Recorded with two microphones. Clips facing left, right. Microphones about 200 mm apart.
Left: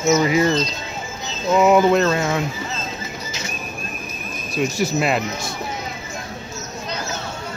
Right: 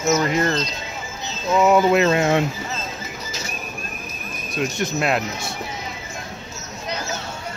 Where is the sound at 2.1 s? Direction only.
20° right (ahead or behind).